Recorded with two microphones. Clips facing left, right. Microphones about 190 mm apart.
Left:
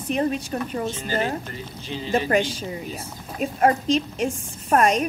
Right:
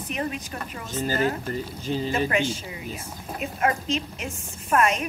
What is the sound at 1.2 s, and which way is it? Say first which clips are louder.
Speech: right 2 dB; 45° right (ahead or behind).